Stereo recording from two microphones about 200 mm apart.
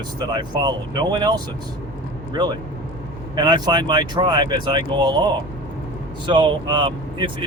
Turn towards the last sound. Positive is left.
turn(degrees=-25)  # may be behind; listen again after turning